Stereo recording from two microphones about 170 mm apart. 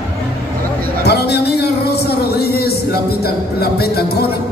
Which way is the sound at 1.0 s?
75° left (ahead or behind).